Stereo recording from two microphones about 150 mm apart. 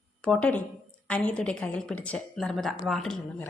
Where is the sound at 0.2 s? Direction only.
5° left (ahead or behind).